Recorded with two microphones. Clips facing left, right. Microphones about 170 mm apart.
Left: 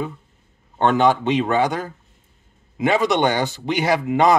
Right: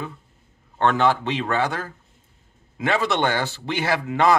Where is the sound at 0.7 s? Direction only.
15° left (ahead or behind).